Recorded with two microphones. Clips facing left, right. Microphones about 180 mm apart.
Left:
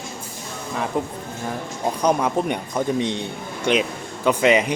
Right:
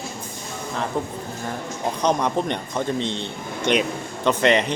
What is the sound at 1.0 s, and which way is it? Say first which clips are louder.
A man's voice: left 1 dB; 15° left (ahead or behind).